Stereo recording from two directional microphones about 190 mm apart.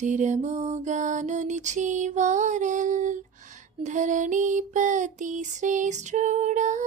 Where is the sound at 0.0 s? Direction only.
40° right (ahead or behind).